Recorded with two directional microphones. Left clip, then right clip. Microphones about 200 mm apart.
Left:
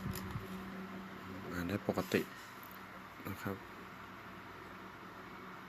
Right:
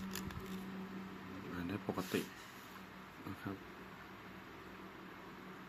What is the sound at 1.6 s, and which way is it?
Speech, 15° left (ahead or behind).